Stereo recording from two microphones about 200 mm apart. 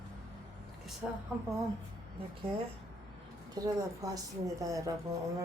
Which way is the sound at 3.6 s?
15° right (ahead or behind).